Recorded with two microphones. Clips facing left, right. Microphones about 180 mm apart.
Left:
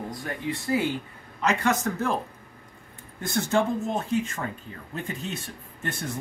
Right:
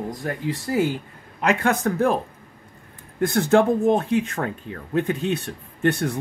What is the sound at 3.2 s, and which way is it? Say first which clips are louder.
Speech: right 7 dB; 60° right (ahead or behind).